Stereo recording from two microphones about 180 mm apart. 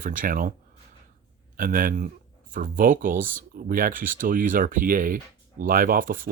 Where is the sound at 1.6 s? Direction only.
50° right (ahead or behind).